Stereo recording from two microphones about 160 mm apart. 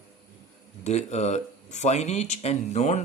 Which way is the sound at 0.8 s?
45° left (ahead or behind).